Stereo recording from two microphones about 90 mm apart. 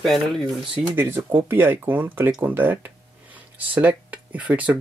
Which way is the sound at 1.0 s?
25° right (ahead or behind).